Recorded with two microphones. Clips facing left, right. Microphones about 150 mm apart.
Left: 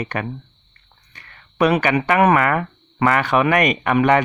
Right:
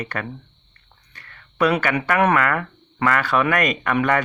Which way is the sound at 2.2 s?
10° left (ahead or behind).